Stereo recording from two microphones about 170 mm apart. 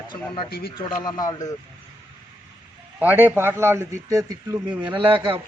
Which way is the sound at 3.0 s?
10° right (ahead or behind).